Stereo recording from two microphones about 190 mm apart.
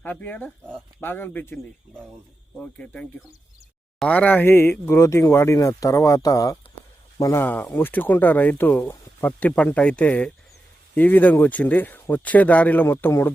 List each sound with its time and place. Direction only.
0.0 s speech: 10° left (ahead or behind)
2.6 s speech: 5° left (ahead or behind)